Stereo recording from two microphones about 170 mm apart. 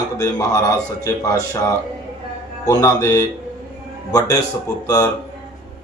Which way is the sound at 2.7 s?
20° left (ahead or behind).